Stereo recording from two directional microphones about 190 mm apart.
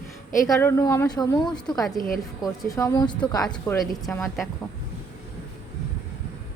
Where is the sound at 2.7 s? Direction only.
20° left (ahead or behind).